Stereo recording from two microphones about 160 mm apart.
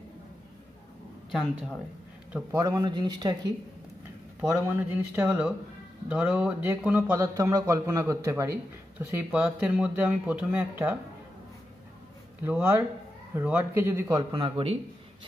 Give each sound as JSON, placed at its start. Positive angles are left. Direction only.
{"t": 1.3, "sound": "speech", "side_deg": -5}
{"t": 2.5, "sound": "speech", "side_deg": -25}
{"t": 4.4, "sound": "a man's voice", "side_deg": -10}
{"t": 7.2, "sound": "a man's voice", "side_deg": -20}
{"t": 12.4, "sound": "a man's voice", "side_deg": -10}